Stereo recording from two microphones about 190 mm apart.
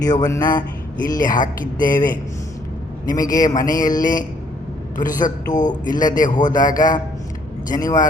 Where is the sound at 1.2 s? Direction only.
45° left (ahead or behind).